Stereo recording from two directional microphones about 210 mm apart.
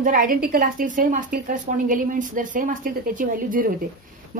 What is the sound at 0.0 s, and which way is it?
A woman's voice, 40° right (ahead or behind).